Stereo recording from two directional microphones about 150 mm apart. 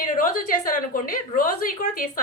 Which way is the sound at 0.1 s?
60° left (ahead or behind).